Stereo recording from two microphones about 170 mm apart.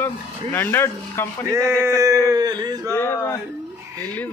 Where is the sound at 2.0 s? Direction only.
20° right (ahead or behind).